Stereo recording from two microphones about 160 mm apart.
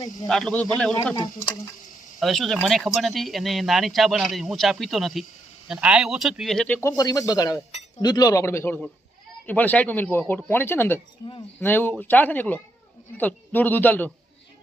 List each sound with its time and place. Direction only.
0.3 s speech: 5° left (ahead or behind)
2.1 s speech: centre (ahead or behind)
6.8 s a man's voice: 25° left (ahead or behind)
7.7 s chink: 45° left (ahead or behind)
8.0 s a man's voice: 25° left (ahead or behind)